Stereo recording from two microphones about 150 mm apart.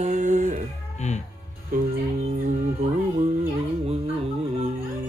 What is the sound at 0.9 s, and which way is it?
Speech, 50° left (ahead or behind).